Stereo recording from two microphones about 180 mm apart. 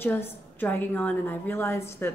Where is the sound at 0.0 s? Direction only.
10° left (ahead or behind).